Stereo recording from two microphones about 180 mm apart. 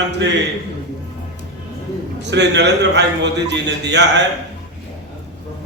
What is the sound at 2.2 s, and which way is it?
Speech, 75° right (ahead or behind).